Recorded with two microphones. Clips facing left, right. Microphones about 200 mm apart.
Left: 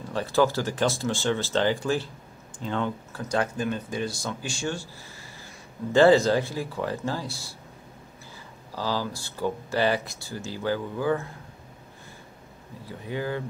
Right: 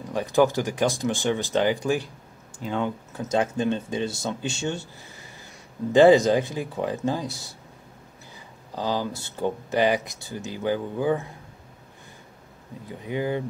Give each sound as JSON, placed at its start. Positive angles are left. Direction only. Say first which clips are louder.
{"t": 0.1, "sound": "speech", "louder": "right 2 dB", "side_deg": -15}
{"t": 8.7, "sound": "speech", "louder": "right 2 dB", "side_deg": -20}
{"t": 12.8, "sound": "speech", "louder": "right 3 dB", "side_deg": -20}